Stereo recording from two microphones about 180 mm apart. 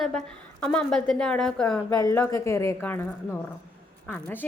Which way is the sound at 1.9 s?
15° left (ahead or behind).